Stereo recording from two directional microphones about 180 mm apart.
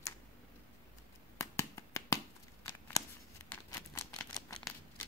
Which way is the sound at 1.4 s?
15° left (ahead or behind).